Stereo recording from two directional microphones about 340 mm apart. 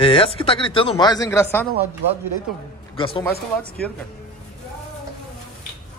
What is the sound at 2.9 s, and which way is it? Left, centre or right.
Speech, centre.